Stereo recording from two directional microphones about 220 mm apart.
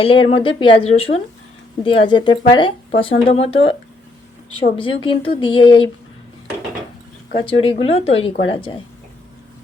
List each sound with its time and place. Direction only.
0.0 s speech: 25° left (ahead or behind)
4.8 s speech: 25° left (ahead or behind)
7.4 s speech: 25° left (ahead or behind)